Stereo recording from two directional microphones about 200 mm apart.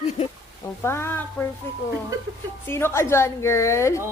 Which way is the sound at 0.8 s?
10° left (ahead or behind).